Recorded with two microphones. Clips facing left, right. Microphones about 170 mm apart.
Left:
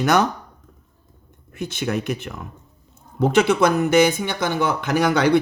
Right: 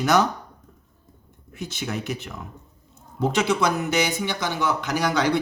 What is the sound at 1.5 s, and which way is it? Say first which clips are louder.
Speech: left 6 dB; 60° left (ahead or behind).